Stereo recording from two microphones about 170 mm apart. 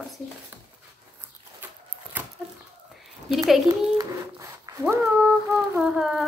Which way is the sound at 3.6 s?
20° right (ahead or behind).